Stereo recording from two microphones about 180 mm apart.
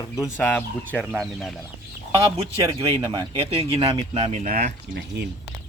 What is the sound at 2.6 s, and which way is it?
Speech, 20° right (ahead or behind).